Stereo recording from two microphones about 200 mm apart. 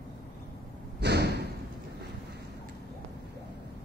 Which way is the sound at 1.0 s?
55° right (ahead or behind).